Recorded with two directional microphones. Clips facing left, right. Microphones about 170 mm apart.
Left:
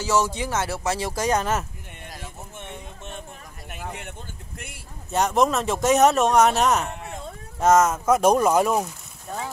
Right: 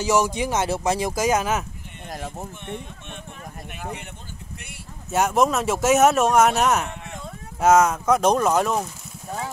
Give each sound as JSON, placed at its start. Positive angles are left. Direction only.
{"t": 0.0, "sound": "speech", "side_deg": -15}
{"t": 2.0, "sound": "a sound", "side_deg": -50}
{"t": 5.1, "sound": "speech", "side_deg": -5}